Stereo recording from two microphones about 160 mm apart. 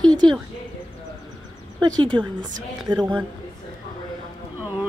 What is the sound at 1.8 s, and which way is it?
Speech, 30° right (ahead or behind).